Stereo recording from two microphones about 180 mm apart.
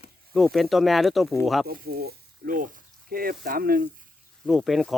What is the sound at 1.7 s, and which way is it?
Speech, 55° right (ahead or behind).